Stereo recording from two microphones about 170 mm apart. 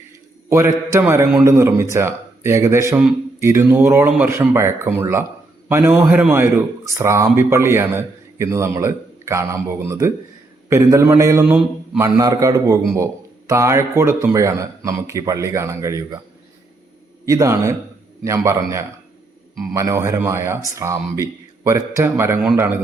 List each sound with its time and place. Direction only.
0.5 s a man's voice: 15° right (ahead or behind)
17.2 s a man's voice: 20° right (ahead or behind)